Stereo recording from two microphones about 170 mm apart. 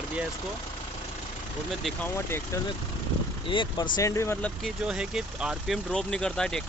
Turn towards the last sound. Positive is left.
turn(degrees=5)  # may be behind; listen again after turning